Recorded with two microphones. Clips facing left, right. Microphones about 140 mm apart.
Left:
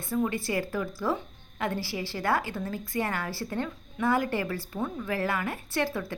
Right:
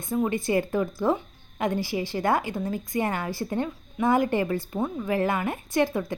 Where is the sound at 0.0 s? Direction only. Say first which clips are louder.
Right 3 dB; 20° right (ahead or behind).